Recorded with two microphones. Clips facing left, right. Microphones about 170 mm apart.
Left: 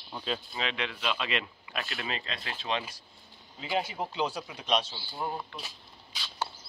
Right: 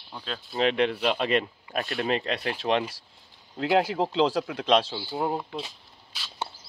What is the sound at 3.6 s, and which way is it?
Speech, 85° right.